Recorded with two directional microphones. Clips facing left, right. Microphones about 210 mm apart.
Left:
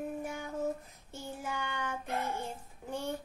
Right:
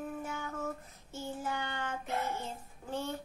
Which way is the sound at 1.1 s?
15° left (ahead or behind).